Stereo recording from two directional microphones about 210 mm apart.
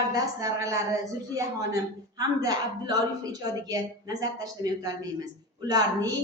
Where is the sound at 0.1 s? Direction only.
15° right (ahead or behind).